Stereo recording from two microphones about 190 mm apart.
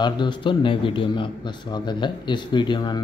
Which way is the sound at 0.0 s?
25° left (ahead or behind).